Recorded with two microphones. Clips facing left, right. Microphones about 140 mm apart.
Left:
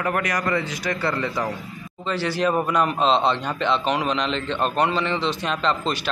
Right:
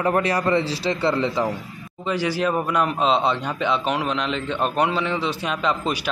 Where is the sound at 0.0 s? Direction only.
30° right (ahead or behind).